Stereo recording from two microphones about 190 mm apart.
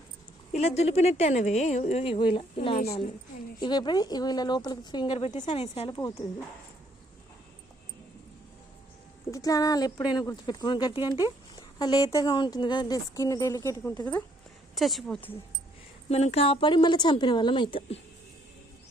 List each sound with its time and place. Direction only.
0.8 s a woman's voice: 35° left (ahead or behind)
5.3 s a woman's voice: 40° left (ahead or behind)
9.3 s speech: 20° left (ahead or behind)
14.8 s a woman's voice: centre (ahead or behind)
16.0 s speech: 35° left (ahead or behind)